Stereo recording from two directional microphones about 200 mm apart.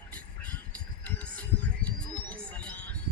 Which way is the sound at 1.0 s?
5° left (ahead or behind).